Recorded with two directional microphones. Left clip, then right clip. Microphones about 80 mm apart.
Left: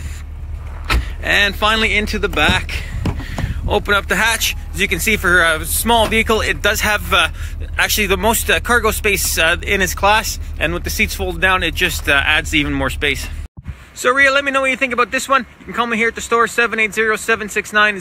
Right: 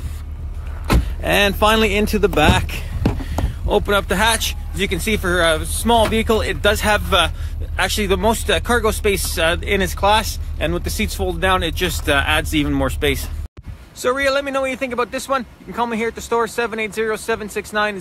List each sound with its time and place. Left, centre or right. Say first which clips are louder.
1.2 s speech: left 1 dB; right
3.2 s speech: even; right
14.0 s speech: left 5 dB; centre